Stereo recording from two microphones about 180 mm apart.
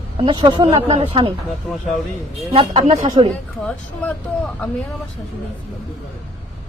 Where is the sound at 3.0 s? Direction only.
25° right (ahead or behind).